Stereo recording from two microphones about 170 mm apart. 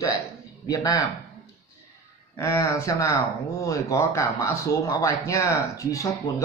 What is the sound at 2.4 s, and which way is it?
Speech, 15° left (ahead or behind).